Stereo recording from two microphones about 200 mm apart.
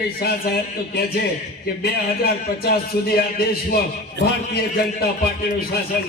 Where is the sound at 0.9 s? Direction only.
50° left (ahead or behind).